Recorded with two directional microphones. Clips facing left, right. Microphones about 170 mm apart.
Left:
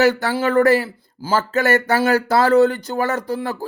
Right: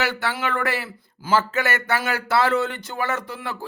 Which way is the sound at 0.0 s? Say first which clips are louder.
Left 8 dB; 40° left (ahead or behind).